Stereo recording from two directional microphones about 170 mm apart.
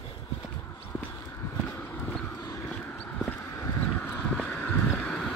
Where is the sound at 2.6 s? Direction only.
10° left (ahead or behind).